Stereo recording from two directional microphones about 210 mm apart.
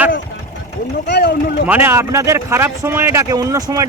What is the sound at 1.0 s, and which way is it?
Speech, 50° left (ahead or behind).